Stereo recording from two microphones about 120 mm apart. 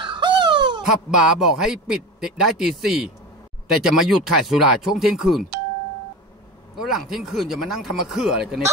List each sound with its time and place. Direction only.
0.0 s a sound: 40° right (ahead or behind)
1.1 s a man's voice: 5° right (ahead or behind)
6.7 s a man's voice: centre (ahead or behind)